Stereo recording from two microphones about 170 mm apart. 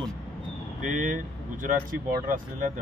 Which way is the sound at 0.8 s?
50° right (ahead or behind).